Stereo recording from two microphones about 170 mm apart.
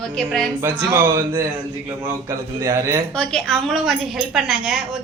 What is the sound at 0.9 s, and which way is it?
A man's voice, 15° right (ahead or behind).